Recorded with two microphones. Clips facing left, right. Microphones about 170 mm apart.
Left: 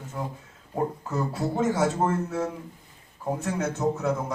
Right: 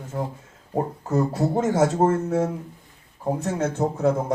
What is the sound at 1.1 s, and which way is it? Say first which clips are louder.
Speech: right 10 dB; 45° right (ahead or behind).